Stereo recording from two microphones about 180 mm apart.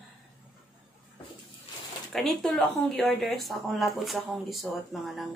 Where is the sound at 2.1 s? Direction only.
Centre (ahead or behind).